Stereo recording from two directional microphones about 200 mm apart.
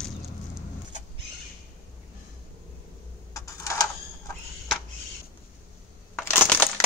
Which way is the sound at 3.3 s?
15° left (ahead or behind).